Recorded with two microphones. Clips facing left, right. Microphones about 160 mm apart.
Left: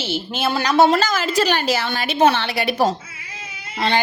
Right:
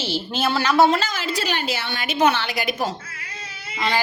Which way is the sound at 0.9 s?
40° left (ahead or behind).